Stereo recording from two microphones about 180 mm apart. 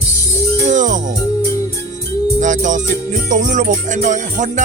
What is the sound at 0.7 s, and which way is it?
Music, 45° right (ahead or behind).